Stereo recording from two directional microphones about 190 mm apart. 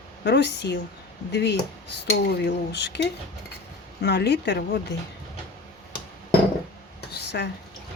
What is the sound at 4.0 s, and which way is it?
Dishes, 60° left (ahead or behind).